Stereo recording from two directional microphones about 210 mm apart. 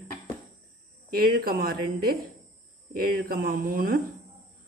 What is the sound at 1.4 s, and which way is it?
Speech, 45° right (ahead or behind).